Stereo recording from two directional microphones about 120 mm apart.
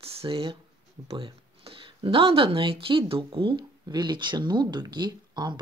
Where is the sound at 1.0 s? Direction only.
55° right (ahead or behind).